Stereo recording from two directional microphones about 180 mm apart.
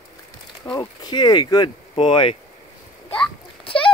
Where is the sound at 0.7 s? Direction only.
25° left (ahead or behind).